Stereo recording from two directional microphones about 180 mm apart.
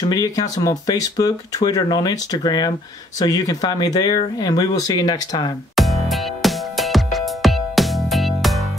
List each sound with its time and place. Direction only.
0.0 s speech: 20° left (ahead or behind)
5.8 s music: centre (ahead or behind)